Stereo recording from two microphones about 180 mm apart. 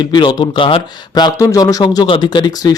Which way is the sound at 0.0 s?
25° left (ahead or behind).